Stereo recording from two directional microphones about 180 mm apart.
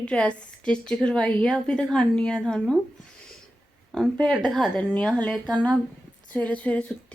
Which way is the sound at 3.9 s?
5° left (ahead or behind).